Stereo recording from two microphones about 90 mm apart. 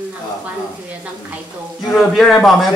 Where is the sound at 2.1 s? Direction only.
Centre (ahead or behind).